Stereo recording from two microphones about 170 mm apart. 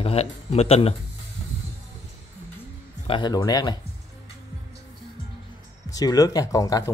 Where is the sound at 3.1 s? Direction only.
25° left (ahead or behind).